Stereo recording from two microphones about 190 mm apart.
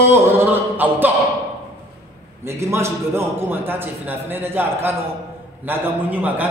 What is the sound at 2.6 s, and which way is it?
A man's voice, 15° right (ahead or behind).